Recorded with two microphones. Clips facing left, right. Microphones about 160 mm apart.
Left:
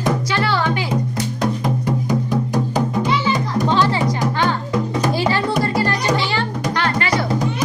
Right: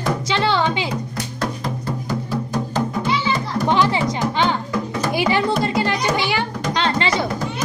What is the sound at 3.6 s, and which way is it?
Music, 15° right (ahead or behind).